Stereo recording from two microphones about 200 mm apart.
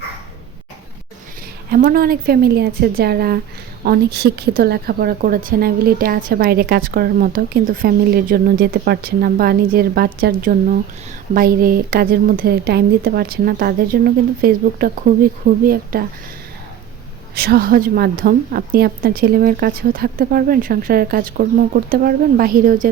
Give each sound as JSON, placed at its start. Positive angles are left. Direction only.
{"t": 1.7, "sound": "a woman's voice", "side_deg": -45}
{"t": 17.3, "sound": "a woman's voice", "side_deg": -50}